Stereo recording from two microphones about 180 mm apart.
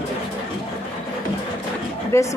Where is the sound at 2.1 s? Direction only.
15° left (ahead or behind).